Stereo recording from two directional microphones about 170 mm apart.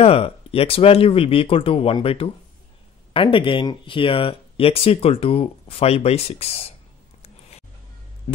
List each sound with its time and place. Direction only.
0.0 s speech: 35° left (ahead or behind)